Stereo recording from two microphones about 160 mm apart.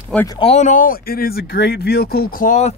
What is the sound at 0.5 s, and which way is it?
Speech, 50° left (ahead or behind).